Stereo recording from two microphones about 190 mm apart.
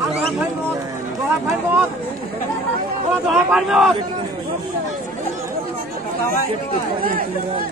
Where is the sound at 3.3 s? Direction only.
Centre (ahead or behind).